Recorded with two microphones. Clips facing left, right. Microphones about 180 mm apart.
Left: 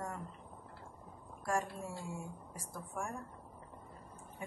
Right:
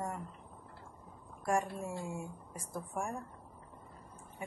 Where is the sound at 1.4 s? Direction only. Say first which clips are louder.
Right 3 dB; 20° right (ahead or behind).